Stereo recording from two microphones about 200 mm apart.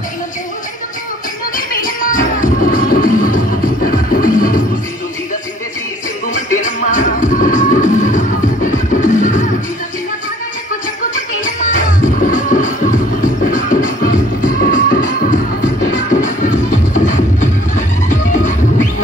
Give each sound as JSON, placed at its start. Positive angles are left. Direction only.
{"t": 1.7, "sound": "music", "side_deg": 45}
{"t": 6.3, "sound": "music", "side_deg": 40}
{"t": 11.1, "sound": "music", "side_deg": 40}